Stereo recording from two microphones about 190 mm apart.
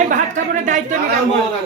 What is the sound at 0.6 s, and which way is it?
Speech, 40° right (ahead or behind).